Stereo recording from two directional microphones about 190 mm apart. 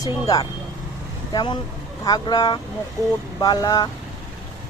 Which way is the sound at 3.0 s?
15° right (ahead or behind).